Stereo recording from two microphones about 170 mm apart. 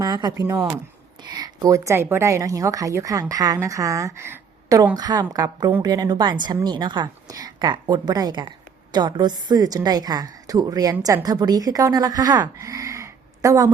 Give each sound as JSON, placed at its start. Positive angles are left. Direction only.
{"t": 0.0, "sound": "a woman's voice", "side_deg": -25}